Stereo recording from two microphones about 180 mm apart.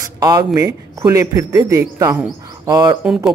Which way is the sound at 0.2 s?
20° right (ahead or behind).